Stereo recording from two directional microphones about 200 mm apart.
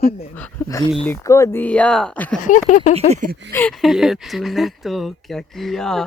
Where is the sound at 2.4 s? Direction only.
40° left (ahead or behind).